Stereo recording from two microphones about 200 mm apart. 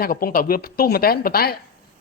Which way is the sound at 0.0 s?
45° left (ahead or behind).